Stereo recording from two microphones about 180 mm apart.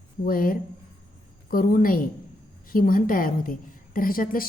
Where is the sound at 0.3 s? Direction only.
55° left (ahead or behind).